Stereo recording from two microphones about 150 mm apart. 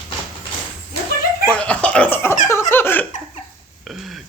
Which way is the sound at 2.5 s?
15° left (ahead or behind).